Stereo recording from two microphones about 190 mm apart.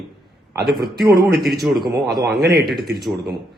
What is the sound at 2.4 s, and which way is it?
Speech, 55° right (ahead or behind).